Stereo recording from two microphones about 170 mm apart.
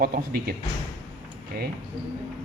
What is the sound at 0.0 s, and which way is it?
Speech, 60° right (ahead or behind).